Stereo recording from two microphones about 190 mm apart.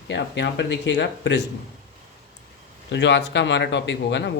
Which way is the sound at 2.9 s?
65° left (ahead or behind).